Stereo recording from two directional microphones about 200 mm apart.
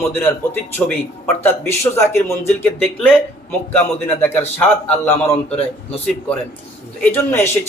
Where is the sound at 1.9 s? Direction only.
15° left (ahead or behind).